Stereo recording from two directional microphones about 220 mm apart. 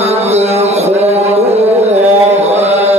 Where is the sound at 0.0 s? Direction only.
30° right (ahead or behind).